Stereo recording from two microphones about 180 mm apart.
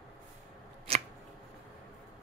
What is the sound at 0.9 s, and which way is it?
Scissors, 35° right (ahead or behind).